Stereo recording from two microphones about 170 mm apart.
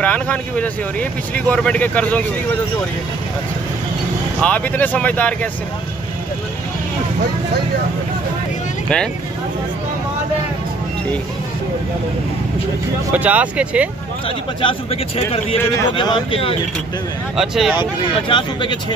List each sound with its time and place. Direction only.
0.0 s speech: 10° left (ahead or behind)
4.4 s speech: 10° left (ahead or behind)
8.8 s speech: 5° left (ahead or behind)
13.1 s speech: 10° right (ahead or behind)
14.2 s a man's voice: 30° left (ahead or behind)
17.4 s speech: centre (ahead or behind)
18.3 s speech: 30° left (ahead or behind)